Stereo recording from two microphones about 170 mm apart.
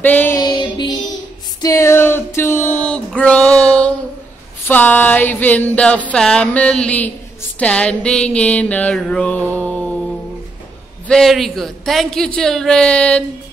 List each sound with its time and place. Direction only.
0.0 s music: 10° left (ahead or behind)
0.4 s music: 25° left (ahead or behind)
1.6 s a sound: 20° left (ahead or behind)
4.6 s music: 10° left (ahead or behind)
11.1 s a man's voice: centre (ahead or behind)